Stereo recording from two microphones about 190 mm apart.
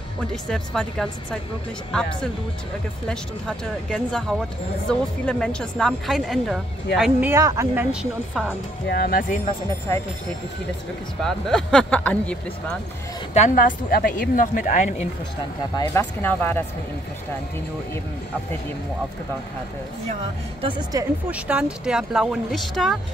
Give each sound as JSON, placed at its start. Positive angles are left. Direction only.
{"t": 0.3, "sound": "a woman's voice", "side_deg": 5}
{"t": 8.8, "sound": "speech", "side_deg": 55}
{"t": 11.2, "sound": "speech", "side_deg": 0}
{"t": 13.3, "sound": "a woman's voice", "side_deg": 40}
{"t": 15.7, "sound": "speech", "side_deg": 15}
{"t": 20.6, "sound": "speech", "side_deg": -20}
{"t": 21.3, "sound": "speech", "side_deg": -5}